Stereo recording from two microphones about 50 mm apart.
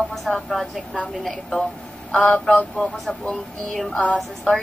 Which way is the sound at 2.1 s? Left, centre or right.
Left.